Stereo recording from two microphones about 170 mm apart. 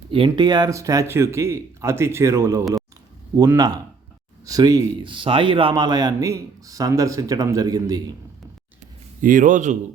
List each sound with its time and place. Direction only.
0.1 s a man's voice: 30° right (ahead or behind)
9.2 s a man's voice: 50° right (ahead or behind)